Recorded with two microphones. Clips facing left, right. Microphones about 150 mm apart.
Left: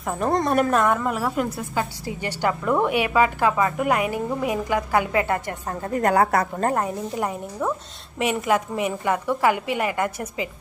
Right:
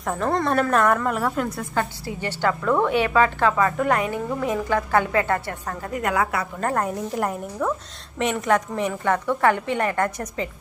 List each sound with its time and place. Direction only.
0.2 s a woman's voice: 15° left (ahead or behind)
0.7 s a woman's voice: centre (ahead or behind); by 5.9 s 20° left (ahead or behind)
5.9 s a woman's voice: 35° left (ahead or behind)
6.8 s a woman's voice: 5° left (ahead or behind)